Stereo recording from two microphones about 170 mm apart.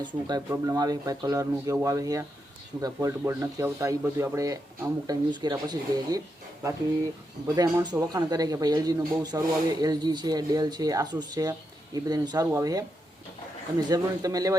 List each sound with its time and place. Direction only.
0.0 s speech: 25° right (ahead or behind)